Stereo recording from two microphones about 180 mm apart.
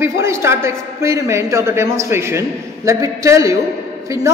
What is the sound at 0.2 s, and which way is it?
A man's voice, 15° right (ahead or behind).